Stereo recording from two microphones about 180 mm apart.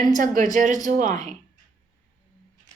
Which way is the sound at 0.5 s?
45° right (ahead or behind).